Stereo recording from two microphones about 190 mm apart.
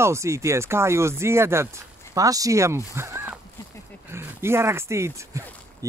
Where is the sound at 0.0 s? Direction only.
15° right (ahead or behind).